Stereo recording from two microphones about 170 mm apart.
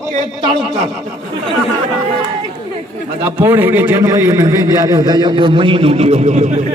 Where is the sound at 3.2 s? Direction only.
15° right (ahead or behind); by 6.7 s 40° right (ahead or behind).